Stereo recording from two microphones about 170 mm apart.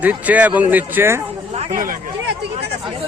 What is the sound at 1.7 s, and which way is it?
Speech, 55° right (ahead or behind).